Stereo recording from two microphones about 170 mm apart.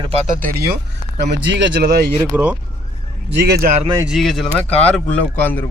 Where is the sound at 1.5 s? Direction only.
90° right.